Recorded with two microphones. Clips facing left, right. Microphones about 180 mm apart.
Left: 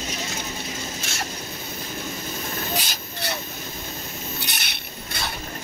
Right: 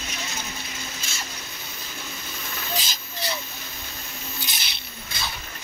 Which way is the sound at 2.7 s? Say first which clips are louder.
Left 2 dB; 60° left (ahead or behind).